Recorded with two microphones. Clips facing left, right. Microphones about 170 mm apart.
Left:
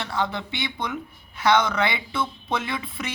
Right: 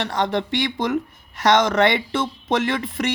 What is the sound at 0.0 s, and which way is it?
Speech, 80° right.